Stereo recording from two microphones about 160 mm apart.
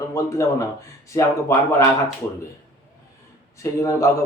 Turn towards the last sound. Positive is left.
turn(degrees=20)  # may be behind; listen again after turning